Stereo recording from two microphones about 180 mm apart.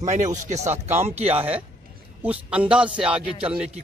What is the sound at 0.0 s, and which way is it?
Speech, 40° right (ahead or behind).